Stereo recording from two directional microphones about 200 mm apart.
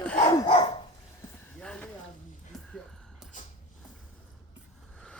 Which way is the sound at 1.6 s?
5° left (ahead or behind).